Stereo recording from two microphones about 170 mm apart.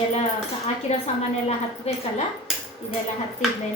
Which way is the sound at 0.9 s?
40° left (ahead or behind).